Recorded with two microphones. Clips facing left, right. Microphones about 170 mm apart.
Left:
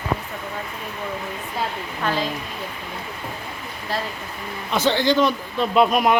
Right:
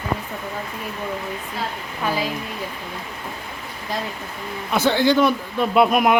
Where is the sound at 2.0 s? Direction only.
10° right (ahead or behind).